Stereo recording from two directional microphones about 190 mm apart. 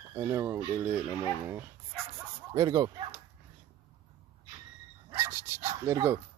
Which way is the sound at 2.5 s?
20° right (ahead or behind).